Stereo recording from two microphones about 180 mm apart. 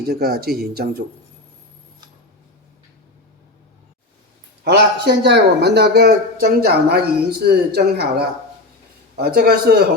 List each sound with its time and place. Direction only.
0.1 s a man's voice: 60° right (ahead or behind)
4.6 s a man's voice: 70° right (ahead or behind)